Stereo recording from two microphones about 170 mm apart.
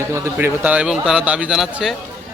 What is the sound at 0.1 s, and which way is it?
Mantra, 10° right (ahead or behind).